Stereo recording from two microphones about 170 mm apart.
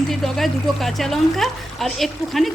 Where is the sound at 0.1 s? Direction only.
Centre (ahead or behind).